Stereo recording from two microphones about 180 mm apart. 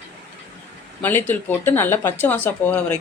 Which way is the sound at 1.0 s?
10° left (ahead or behind).